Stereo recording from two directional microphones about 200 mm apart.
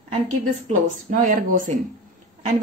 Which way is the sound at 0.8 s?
40° right (ahead or behind).